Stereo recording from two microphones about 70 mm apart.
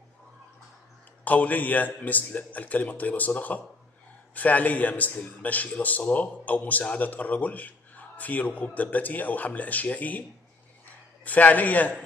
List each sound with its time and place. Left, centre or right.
1.2 s a man's voice: left
11.2 s a man's voice: left